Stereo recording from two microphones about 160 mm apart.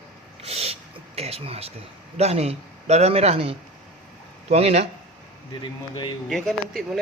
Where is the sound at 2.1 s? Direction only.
40° right (ahead or behind).